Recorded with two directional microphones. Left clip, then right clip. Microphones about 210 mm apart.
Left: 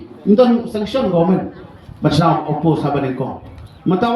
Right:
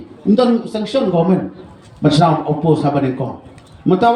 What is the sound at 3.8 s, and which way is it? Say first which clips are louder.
Speech: right 3 dB; 45° right (ahead or behind).